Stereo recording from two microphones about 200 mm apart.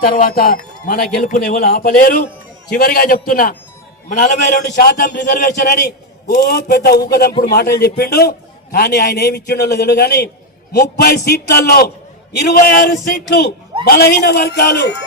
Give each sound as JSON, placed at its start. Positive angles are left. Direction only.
{"t": 0.1, "sound": "a man's voice", "side_deg": 45}
{"t": 5.3, "sound": "a man's voice", "side_deg": 40}